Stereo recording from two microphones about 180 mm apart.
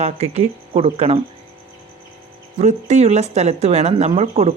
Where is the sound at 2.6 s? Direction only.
40° right (ahead or behind).